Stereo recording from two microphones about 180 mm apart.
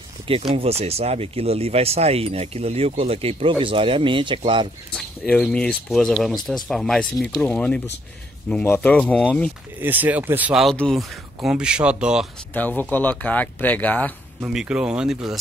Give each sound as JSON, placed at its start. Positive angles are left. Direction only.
{"t": 0.6, "sound": "speech", "side_deg": -35}
{"t": 5.3, "sound": "speech", "side_deg": 5}
{"t": 9.8, "sound": "speech", "side_deg": -10}
{"t": 12.5, "sound": "speech", "side_deg": 10}
{"t": 14.4, "sound": "speech", "side_deg": -5}